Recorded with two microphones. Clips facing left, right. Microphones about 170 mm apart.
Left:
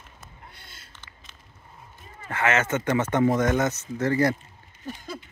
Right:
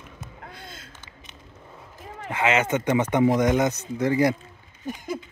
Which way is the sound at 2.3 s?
15° right (ahead or behind).